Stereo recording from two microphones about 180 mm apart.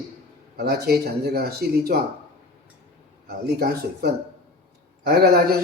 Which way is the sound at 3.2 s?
60° right (ahead or behind).